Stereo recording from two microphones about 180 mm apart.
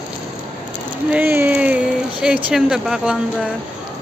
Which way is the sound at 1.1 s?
10° right (ahead or behind).